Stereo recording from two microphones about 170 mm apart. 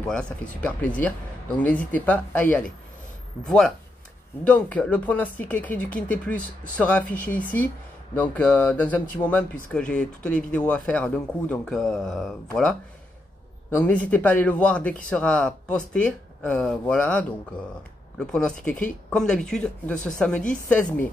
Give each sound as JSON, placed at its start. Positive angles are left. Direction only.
{"t": 0.0, "sound": "speech", "side_deg": 5}
{"t": 13.7, "sound": "speech", "side_deg": 10}